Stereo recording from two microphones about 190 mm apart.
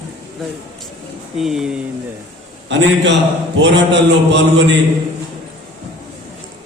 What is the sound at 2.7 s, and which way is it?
Mantra, 70° right (ahead or behind).